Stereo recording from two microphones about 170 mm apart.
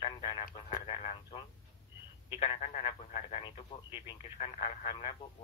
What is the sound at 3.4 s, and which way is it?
Speech, 30° left (ahead or behind).